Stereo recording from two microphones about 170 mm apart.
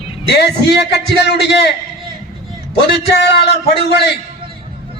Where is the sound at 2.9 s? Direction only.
90° left.